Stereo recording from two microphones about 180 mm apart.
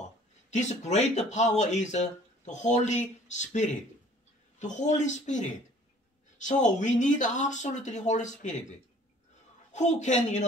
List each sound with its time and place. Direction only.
0.5 s speech: 40° left (ahead or behind)